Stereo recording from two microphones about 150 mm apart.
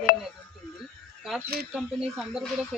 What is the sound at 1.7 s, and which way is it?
Speech, centre (ahead or behind).